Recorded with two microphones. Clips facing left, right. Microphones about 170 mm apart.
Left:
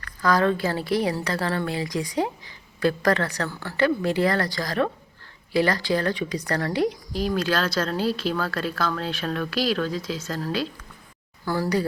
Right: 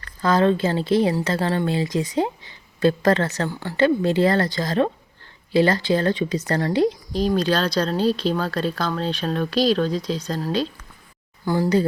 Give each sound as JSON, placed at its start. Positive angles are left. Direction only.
{"t": 0.0, "sound": "a woman's voice", "side_deg": -25}